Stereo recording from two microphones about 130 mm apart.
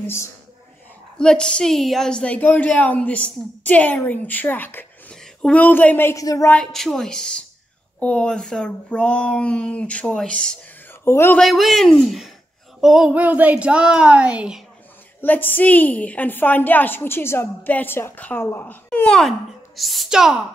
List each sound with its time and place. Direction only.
0.0 s speech: 20° left (ahead or behind)
1.1 s a woman's voice: 5° left (ahead or behind); by 6.5 s 25° left (ahead or behind)
6.5 s a woman's voice: 5° left (ahead or behind)
10.9 s a sound: 20° left (ahead or behind)
11.3 s a woman's voice: centre (ahead or behind)
15.2 s a woman's voice: 15° left (ahead or behind); by 20.3 s 5° right (ahead or behind)